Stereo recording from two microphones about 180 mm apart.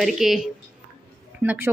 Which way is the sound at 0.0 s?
Centre (ahead or behind).